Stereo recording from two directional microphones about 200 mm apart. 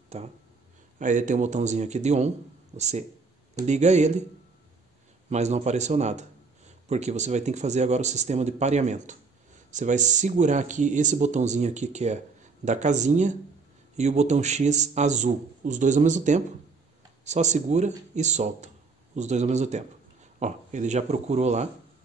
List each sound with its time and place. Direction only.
0.9 s speech: 40° right (ahead or behind)
5.3 s speech: 35° right (ahead or behind)